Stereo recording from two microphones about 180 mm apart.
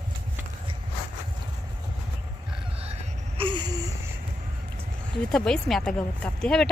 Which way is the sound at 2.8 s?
35° right (ahead or behind).